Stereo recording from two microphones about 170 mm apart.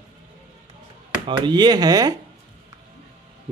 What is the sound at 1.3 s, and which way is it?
Speech, 25° right (ahead or behind).